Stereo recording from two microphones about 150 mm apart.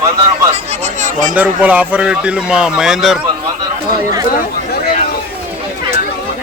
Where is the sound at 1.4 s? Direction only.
10° right (ahead or behind).